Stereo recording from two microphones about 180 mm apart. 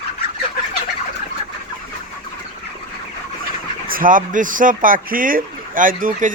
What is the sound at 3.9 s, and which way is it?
Speech, 50° right (ahead or behind).